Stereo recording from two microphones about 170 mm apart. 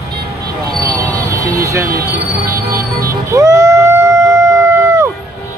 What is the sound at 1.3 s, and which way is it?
Vehicle, 15° right (ahead or behind).